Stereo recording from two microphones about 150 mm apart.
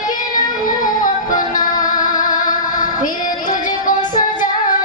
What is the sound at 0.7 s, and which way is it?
Music, 60° left (ahead or behind).